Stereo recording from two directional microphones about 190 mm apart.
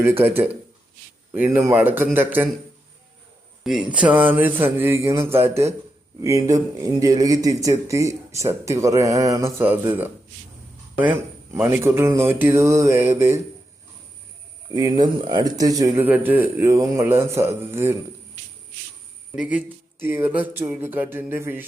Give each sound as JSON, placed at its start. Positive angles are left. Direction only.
{"t": 0.0, "sound": "speech", "side_deg": -10}
{"t": 1.3, "sound": "speech", "side_deg": -10}
{"t": 3.6, "sound": "speech", "side_deg": -5}
{"t": 14.7, "sound": "speech", "side_deg": -20}
{"t": 19.4, "sound": "speech", "side_deg": -5}